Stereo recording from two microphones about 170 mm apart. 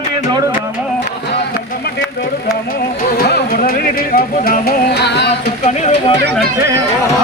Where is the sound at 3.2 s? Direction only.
60° left (ahead or behind); by 5.3 s 80° left.